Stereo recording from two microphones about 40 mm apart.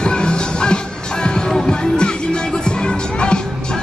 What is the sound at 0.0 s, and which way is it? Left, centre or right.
Music, left.